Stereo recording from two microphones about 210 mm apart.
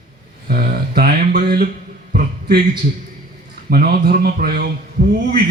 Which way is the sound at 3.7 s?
45° right (ahead or behind).